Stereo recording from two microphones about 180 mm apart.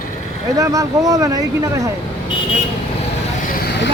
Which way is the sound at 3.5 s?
60° left (ahead or behind).